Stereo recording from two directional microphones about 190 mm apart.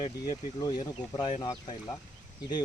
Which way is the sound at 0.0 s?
20° left (ahead or behind).